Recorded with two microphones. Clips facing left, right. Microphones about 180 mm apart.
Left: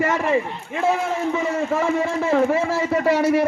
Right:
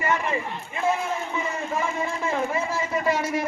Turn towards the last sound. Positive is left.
turn(degrees=70)  # may be behind; listen again after turning